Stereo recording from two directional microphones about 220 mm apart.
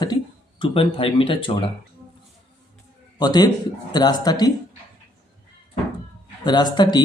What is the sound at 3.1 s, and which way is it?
Speech, 20° left (ahead or behind).